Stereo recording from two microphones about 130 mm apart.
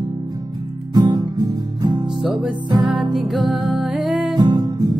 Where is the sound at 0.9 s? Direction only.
30° right (ahead or behind).